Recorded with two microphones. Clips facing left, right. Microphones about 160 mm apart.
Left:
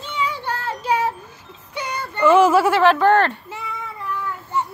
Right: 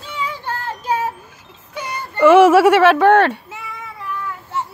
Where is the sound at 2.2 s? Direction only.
80° right.